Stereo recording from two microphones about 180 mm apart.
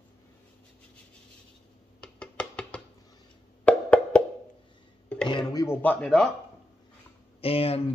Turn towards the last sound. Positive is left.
turn(degrees=30)  # may be behind; listen again after turning